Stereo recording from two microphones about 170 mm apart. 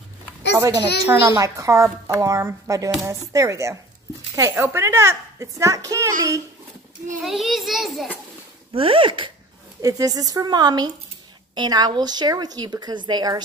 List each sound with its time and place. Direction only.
0.6 s a woman's voice: 15° right (ahead or behind)
7.2 s a child's voice: centre (ahead or behind)
8.7 s speech: 30° right (ahead or behind)